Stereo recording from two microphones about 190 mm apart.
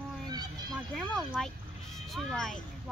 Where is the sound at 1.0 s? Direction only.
5° left (ahead or behind).